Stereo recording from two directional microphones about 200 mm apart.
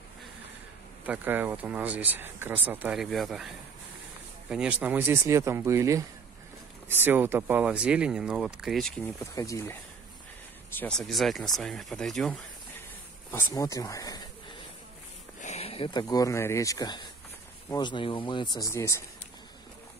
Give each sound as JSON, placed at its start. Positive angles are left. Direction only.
{"t": 1.0, "sound": "speech", "side_deg": -10}
{"t": 4.5, "sound": "speech", "side_deg": -5}
{"t": 9.2, "sound": "speech", "side_deg": 15}
{"t": 10.8, "sound": "speech", "side_deg": 5}
{"t": 13.3, "sound": "speech", "side_deg": 15}
{"t": 15.4, "sound": "speech", "side_deg": 30}